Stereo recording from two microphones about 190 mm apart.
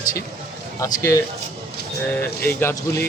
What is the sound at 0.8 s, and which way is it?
Speech, 15° left (ahead or behind).